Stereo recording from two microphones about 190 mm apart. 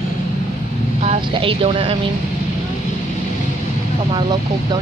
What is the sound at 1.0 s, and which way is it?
Speech, 30° right (ahead or behind).